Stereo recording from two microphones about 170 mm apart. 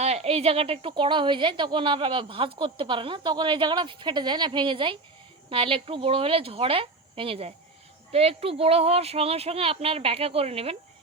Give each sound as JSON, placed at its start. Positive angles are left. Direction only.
{"t": 0.0, "sound": "a woman's voice", "side_deg": -40}